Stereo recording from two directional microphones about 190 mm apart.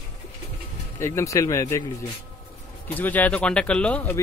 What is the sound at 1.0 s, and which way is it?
Speech, 15° left (ahead or behind).